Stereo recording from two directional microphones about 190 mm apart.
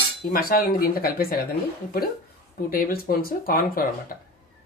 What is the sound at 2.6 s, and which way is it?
Speech, 50° left (ahead or behind).